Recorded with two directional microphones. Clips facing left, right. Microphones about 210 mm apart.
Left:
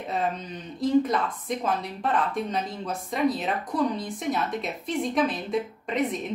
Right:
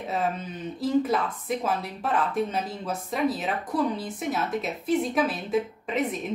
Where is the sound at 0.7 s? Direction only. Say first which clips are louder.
Left 2 dB; 5° right (ahead or behind).